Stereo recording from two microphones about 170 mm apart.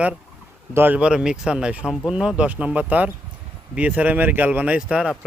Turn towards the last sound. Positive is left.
turn(degrees=-5)  # may be behind; listen again after turning